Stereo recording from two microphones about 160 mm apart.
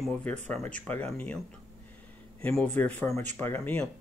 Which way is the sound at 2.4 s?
10° left (ahead or behind).